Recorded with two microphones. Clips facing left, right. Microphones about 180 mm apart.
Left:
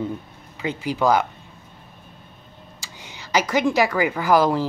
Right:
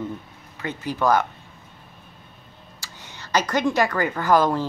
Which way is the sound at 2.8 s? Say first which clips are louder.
Even; 15° left (ahead or behind).